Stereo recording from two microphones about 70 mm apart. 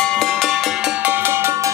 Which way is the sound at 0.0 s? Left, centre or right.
Centre.